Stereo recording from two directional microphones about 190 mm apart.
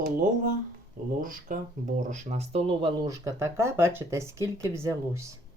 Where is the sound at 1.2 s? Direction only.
45° right (ahead or behind).